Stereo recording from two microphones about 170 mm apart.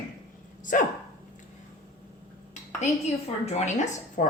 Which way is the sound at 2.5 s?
40° left (ahead or behind).